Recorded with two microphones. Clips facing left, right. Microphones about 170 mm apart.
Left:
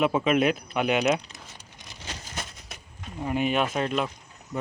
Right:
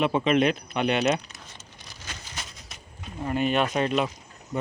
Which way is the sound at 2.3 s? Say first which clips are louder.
Left 3 dB; 55° left (ahead or behind).